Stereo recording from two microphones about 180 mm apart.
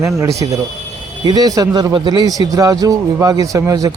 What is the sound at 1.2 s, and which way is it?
Speech, 20° right (ahead or behind).